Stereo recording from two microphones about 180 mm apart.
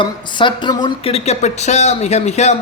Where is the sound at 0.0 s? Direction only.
25° left (ahead or behind).